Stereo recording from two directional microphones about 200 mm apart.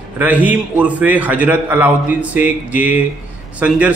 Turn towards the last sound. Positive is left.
turn(degrees=-5)  # may be behind; listen again after turning